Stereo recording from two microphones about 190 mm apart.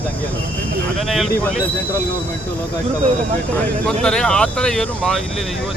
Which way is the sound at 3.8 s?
5° left (ahead or behind).